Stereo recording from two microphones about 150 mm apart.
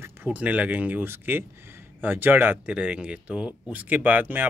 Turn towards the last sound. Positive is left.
turn(degrees=-10)  # may be behind; listen again after turning